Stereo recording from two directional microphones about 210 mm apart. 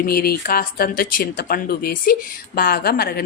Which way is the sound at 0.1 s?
45° left (ahead or behind).